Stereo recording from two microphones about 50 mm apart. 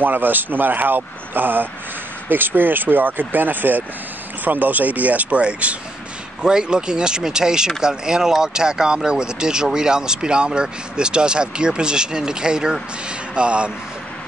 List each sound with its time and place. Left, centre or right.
0.0 s speech: right